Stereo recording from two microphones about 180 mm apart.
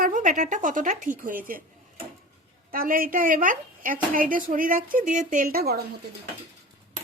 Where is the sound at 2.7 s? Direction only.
50° right (ahead or behind).